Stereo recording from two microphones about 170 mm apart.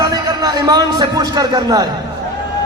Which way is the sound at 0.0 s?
20° right (ahead or behind).